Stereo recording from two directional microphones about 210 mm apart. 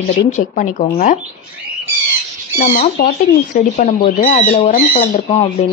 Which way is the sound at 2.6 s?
40° left (ahead or behind).